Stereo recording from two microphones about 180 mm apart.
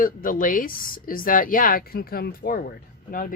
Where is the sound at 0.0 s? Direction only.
50° left (ahead or behind).